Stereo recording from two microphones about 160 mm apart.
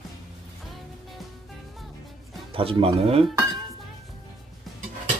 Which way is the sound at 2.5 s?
35° right (ahead or behind).